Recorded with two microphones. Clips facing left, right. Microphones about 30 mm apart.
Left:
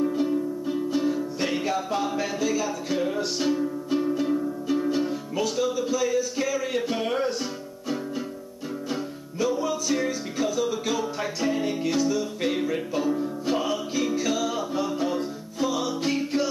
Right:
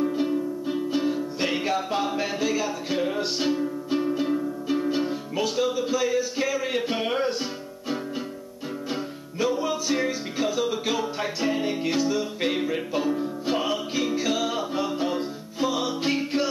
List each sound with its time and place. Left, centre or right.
0.0 s music: centre
9.4 s music: right